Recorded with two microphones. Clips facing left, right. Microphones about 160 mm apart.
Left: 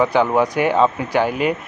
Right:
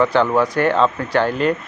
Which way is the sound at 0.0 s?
10° left (ahead or behind).